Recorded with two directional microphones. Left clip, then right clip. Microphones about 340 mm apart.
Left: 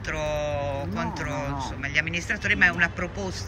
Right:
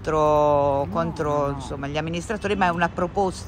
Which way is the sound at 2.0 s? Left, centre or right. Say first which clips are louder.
Left 3 dB; centre.